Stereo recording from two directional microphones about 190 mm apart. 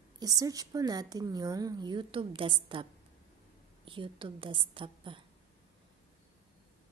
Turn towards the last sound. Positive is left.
turn(degrees=-25)  # may be behind; listen again after turning